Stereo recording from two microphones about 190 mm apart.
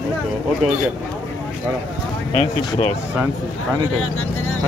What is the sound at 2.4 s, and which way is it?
Speech, 30° left (ahead or behind).